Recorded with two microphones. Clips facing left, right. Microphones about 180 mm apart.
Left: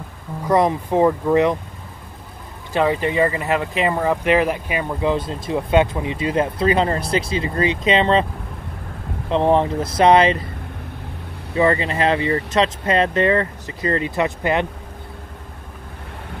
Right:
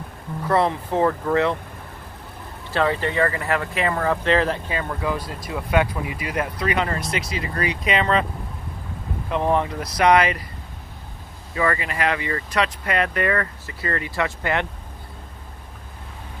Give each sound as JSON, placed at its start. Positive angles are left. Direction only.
{"t": 0.5, "sound": "speech", "side_deg": 15}
{"t": 2.7, "sound": "speech", "side_deg": 15}
{"t": 9.3, "sound": "speech", "side_deg": 30}
{"t": 11.5, "sound": "speech", "side_deg": 25}